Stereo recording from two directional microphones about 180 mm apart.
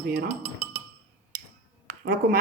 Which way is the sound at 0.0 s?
65° right (ahead or behind).